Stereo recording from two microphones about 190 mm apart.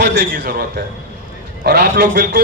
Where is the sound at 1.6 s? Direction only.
60° right (ahead or behind).